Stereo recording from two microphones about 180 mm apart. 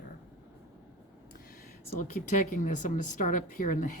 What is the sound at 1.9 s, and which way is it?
Speech, 45° left (ahead or behind).